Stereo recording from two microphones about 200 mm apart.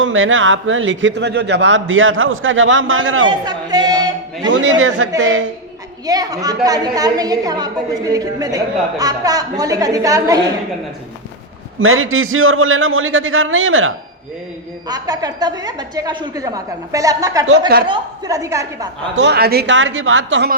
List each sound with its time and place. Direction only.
0.0 s a man's voice: 80° right
3.2 s speech: 20° right (ahead or behind)
4.4 s a man's voice: 70° right (ahead or behind)
6.1 s a woman's voice: 20° right (ahead or behind)
11.8 s a man's voice: 90° right
14.8 s a woman's voice: 20° right (ahead or behind)
19.1 s a woman's voice: 60° right (ahead or behind); by 20.5 s 75° right (ahead or behind)